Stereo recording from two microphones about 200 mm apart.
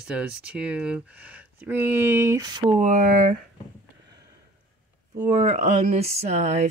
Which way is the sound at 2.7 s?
40° right (ahead or behind).